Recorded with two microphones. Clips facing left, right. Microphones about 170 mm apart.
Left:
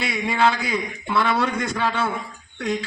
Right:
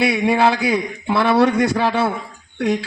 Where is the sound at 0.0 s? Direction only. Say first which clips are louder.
Right 5 dB; 65° right (ahead or behind).